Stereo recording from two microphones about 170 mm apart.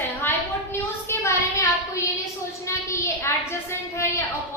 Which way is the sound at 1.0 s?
15° left (ahead or behind).